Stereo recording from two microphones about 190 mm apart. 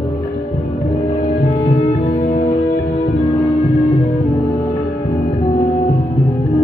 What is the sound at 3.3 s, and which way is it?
Music, 20° left (ahead or behind).